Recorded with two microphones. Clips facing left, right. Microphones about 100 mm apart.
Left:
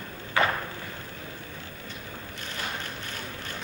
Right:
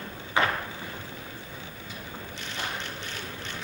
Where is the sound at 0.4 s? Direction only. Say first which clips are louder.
Left 1 dB; 20° right (ahead or behind).